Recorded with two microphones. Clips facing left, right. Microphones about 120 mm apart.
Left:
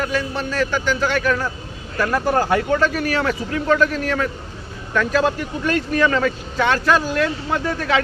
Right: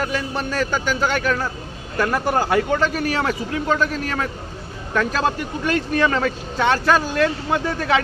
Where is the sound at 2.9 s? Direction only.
35° right (ahead or behind).